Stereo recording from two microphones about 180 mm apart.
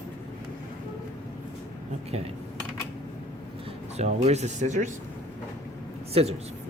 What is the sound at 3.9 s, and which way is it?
Speech, 35° right (ahead or behind).